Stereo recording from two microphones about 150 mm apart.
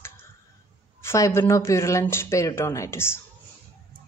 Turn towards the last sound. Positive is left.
turn(degrees=15)  # may be behind; listen again after turning